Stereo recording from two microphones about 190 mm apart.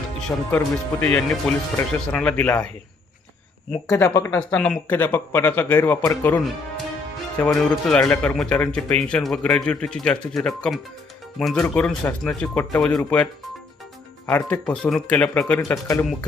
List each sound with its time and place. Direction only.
0.5 s speech: 10° left (ahead or behind)
3.8 s speech: 15° left (ahead or behind)
14.3 s speech: 10° left (ahead or behind)